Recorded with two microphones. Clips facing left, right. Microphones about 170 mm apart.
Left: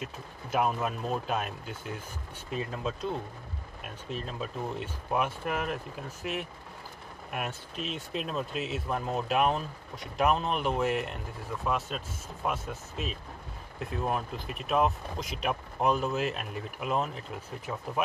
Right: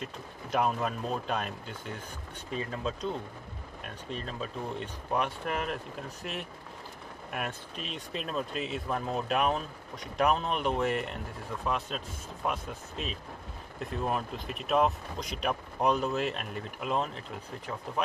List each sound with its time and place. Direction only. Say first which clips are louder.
0.0 s speech: even; 5° left (ahead or behind)
4.1 s speech: left 1 dB; 5° left (ahead or behind)